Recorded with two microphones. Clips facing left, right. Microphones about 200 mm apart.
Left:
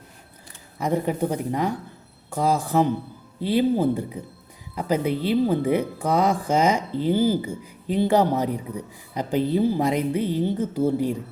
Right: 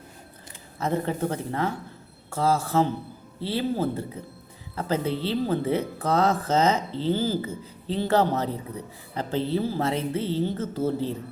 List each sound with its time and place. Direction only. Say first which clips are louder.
0.8 s speech: left 3 dB; 15° left (ahead or behind)